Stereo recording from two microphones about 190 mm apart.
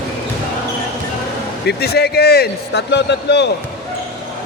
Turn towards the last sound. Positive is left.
turn(degrees=65)  # may be behind; listen again after turning